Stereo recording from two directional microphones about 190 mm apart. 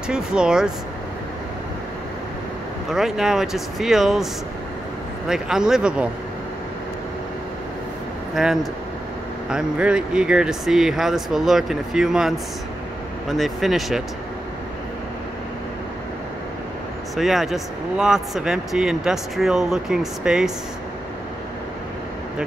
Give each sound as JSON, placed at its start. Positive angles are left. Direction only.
{"t": 0.1, "sound": "speech", "side_deg": -5}
{"t": 2.9, "sound": "speech", "side_deg": -5}
{"t": 5.3, "sound": "speech", "side_deg": -5}
{"t": 8.4, "sound": "speech", "side_deg": 0}
{"t": 17.1, "sound": "speech", "side_deg": 0}